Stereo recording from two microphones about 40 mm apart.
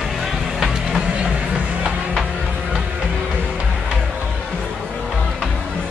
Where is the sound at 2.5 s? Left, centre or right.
Right.